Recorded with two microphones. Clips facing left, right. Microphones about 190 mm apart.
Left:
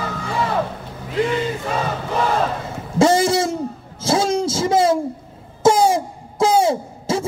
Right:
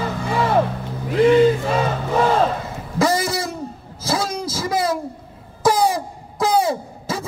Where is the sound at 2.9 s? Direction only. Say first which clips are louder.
Left 5 dB; 30° left (ahead or behind).